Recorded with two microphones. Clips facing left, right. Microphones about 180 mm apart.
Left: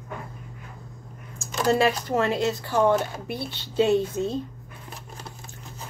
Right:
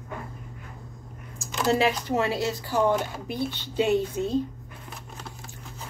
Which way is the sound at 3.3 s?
15° right (ahead or behind).